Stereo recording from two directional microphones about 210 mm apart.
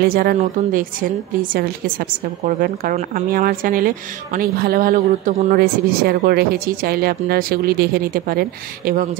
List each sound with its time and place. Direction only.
0.0 s a woman's voice: 45° right (ahead or behind)